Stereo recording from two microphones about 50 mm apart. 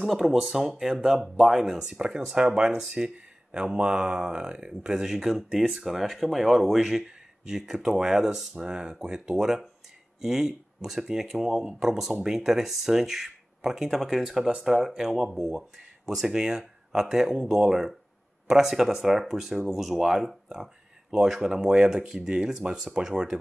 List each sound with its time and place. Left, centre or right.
0.0 s speech: centre